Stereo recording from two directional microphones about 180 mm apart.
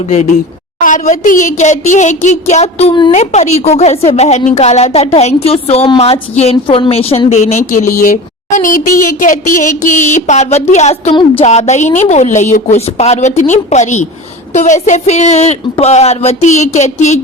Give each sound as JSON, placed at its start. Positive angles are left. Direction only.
{"t": 0.8, "sound": "a woman's voice", "side_deg": 45}
{"t": 11.1, "sound": "speech", "side_deg": 25}
{"t": 11.4, "sound": "a woman's voice", "side_deg": 40}